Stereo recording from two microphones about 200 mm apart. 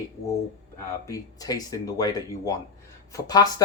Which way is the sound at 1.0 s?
20° left (ahead or behind).